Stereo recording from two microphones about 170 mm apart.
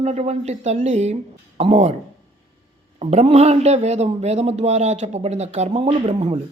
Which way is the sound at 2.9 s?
40° right (ahead or behind).